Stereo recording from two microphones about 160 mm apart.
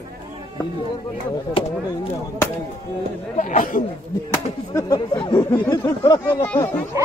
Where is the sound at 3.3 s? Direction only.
55° left (ahead or behind).